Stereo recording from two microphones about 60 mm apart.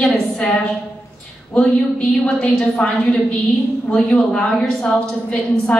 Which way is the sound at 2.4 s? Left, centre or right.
Centre.